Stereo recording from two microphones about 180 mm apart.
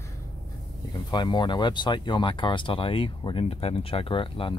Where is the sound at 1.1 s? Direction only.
25° left (ahead or behind).